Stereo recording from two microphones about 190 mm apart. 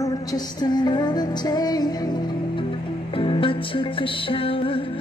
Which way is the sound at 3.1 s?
30° left (ahead or behind).